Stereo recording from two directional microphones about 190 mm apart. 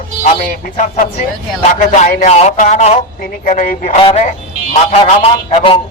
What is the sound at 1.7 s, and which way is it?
Speech, 40° left (ahead or behind).